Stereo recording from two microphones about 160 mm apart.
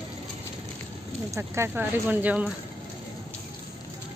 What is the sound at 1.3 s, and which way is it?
Speech, 15° right (ahead or behind).